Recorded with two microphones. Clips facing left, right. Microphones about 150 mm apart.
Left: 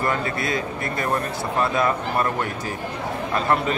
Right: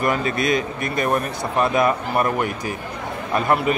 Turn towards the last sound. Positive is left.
turn(degrees=-15)  # may be behind; listen again after turning